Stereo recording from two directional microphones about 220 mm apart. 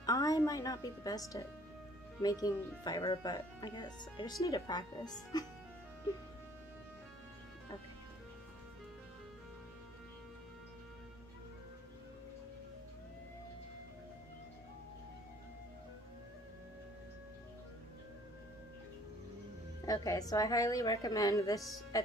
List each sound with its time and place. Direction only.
0.0 s a woman's voice: 15° left (ahead or behind)
19.9 s speech: 15° left (ahead or behind)